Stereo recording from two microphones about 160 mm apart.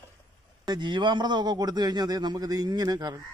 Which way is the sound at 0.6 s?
25° right (ahead or behind).